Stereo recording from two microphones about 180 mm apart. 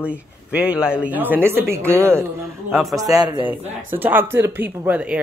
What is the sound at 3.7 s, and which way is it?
Speech, 10° right (ahead or behind).